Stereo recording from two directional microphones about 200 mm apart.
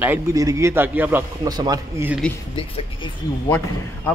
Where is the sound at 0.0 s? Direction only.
15° right (ahead or behind).